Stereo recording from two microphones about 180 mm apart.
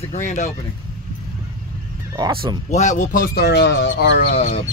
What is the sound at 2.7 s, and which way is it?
Speech, 40° left (ahead or behind).